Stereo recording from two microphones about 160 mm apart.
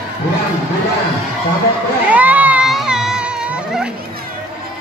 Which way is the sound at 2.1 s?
10° right (ahead or behind).